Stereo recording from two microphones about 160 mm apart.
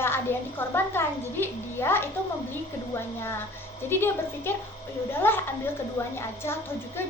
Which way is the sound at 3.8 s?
15° left (ahead or behind).